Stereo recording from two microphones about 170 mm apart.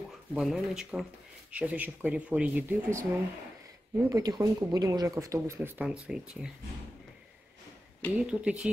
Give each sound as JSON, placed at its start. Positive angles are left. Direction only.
{"t": 0.3, "sound": "speech", "side_deg": 0}
{"t": 4.1, "sound": "speech", "side_deg": -25}
{"t": 8.1, "sound": "speech", "side_deg": -5}